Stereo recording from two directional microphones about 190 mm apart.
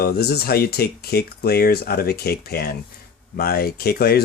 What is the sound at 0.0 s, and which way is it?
Speech, 55° left (ahead or behind).